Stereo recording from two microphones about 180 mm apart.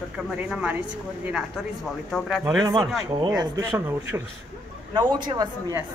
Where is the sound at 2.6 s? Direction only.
20° right (ahead or behind).